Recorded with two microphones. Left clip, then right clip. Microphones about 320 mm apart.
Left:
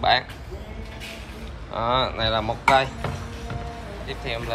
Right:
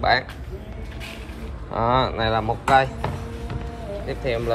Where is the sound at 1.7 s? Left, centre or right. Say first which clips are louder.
Right 2 dB; centre.